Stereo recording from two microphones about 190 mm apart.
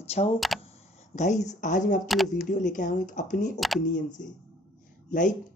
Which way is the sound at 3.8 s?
40° left (ahead or behind).